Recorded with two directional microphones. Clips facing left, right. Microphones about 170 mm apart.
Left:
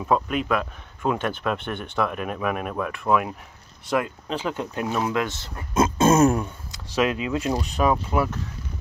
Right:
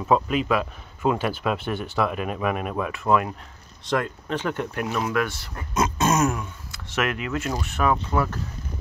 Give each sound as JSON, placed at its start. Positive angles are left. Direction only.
{"t": 0.0, "sound": "speech", "side_deg": 0}
{"t": 6.7, "sound": "speech", "side_deg": 15}